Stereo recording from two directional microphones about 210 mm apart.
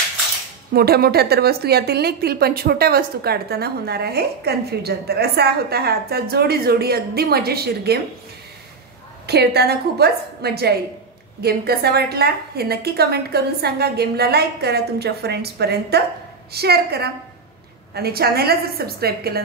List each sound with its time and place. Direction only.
0.7 s a woman's voice: 50° right (ahead or behind)
9.2 s a woman's voice: 50° right (ahead or behind)